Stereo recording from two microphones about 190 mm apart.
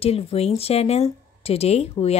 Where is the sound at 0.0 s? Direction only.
30° left (ahead or behind).